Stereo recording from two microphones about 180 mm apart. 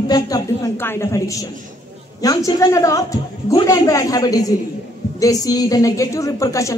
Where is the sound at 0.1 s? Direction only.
20° left (ahead or behind).